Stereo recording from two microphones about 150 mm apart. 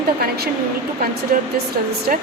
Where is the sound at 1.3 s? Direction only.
90° right.